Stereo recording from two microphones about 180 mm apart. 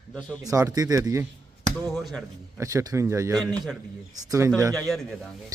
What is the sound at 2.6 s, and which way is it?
Speech, 20° right (ahead or behind).